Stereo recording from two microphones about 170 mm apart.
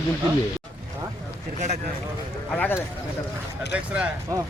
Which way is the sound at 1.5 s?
40° right (ahead or behind).